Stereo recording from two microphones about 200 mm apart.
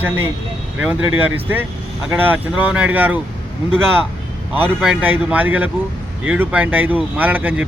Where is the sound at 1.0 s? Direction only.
90° right.